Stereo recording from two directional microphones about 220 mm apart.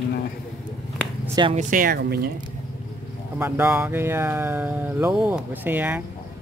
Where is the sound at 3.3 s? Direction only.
10° right (ahead or behind).